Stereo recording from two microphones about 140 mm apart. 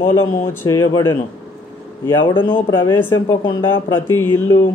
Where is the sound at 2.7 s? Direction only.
20° left (ahead or behind).